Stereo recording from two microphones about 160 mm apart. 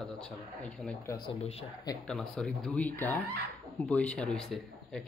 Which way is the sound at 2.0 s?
5° left (ahead or behind).